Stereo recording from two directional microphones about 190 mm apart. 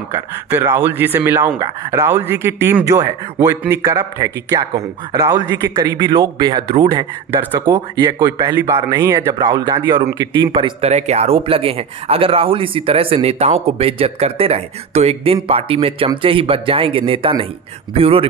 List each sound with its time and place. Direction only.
0.1 s a man's voice: 15° right (ahead or behind); by 18.3 s 30° right (ahead or behind)